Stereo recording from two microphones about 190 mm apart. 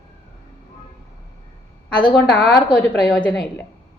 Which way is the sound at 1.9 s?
25° left (ahead or behind).